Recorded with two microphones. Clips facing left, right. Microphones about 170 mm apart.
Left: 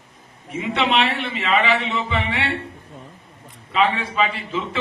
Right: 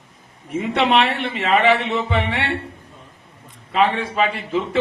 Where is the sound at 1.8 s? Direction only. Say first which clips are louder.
Right 3 dB; 55° right (ahead or behind).